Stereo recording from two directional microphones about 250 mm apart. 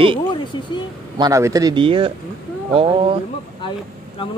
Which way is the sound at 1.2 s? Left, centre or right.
Centre.